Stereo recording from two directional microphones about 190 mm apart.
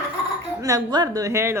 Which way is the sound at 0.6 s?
20° right (ahead or behind).